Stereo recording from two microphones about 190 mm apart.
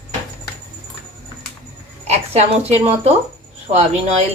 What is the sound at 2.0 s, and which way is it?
Speech, 35° right (ahead or behind).